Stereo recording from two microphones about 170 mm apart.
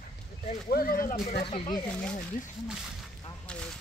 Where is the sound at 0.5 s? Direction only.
55° left (ahead or behind).